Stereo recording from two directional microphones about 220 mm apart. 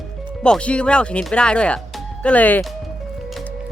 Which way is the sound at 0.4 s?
5° left (ahead or behind).